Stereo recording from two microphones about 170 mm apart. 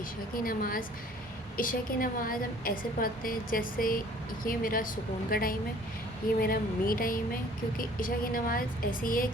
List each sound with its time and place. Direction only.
0.4 s a woman's voice: 55° left (ahead or behind)